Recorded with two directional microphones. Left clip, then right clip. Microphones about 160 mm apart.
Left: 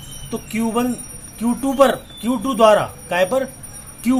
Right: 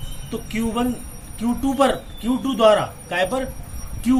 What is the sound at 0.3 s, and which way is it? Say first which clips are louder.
Speech: left 2 dB; 35° left (ahead or behind).